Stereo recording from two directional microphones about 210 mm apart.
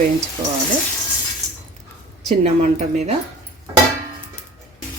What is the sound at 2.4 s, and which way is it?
Speech, 30° right (ahead or behind).